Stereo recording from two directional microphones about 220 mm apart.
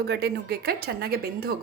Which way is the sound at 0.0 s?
50° right (ahead or behind).